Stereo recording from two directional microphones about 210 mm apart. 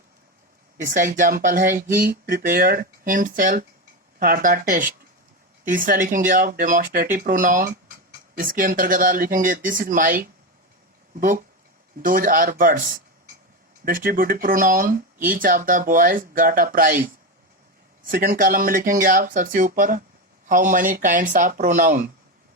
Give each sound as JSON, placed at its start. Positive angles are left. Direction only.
{"t": 0.8, "sound": "speech", "side_deg": -40}
{"t": 12.0, "sound": "speech", "side_deg": -40}